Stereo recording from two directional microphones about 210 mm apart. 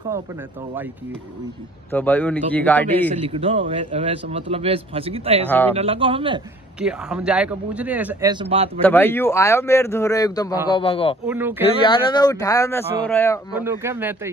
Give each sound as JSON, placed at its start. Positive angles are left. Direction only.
{"t": 1.9, "sound": "speech", "side_deg": 10}
{"t": 3.2, "sound": "a man's voice", "side_deg": -25}
{"t": 6.8, "sound": "speech", "side_deg": -5}
{"t": 8.3, "sound": "a man's voice", "side_deg": -25}
{"t": 8.8, "sound": "speech", "side_deg": 10}
{"t": 11.2, "sound": "speech", "side_deg": -10}
{"t": 11.6, "sound": "speech", "side_deg": 25}
{"t": 13.6, "sound": "speech", "side_deg": -10}